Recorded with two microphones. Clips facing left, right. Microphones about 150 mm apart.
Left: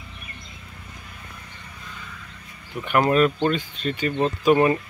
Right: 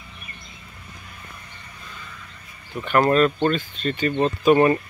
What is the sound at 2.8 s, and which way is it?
Speech, 10° left (ahead or behind).